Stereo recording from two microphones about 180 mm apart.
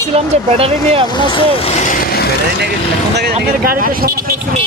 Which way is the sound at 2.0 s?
60° left (ahead or behind).